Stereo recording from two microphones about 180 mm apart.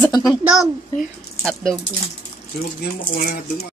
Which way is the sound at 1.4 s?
5° left (ahead or behind).